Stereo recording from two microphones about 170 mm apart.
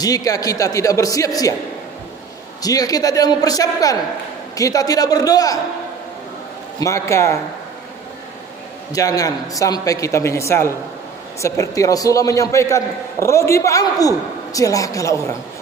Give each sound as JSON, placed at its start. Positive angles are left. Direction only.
{"t": 0.0, "sound": "a man's voice", "side_deg": 20}
{"t": 2.6, "sound": "a man's voice", "side_deg": 20}
{"t": 6.8, "sound": "a man's voice", "side_deg": 15}
{"t": 8.9, "sound": "a man's voice", "side_deg": 20}